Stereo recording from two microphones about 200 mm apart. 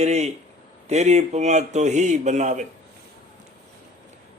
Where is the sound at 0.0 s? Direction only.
35° right (ahead or behind).